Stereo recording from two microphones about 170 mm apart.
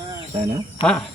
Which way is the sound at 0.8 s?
30° left (ahead or behind).